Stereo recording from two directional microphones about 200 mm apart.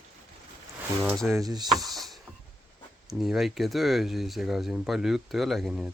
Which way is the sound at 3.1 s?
Centre (ahead or behind).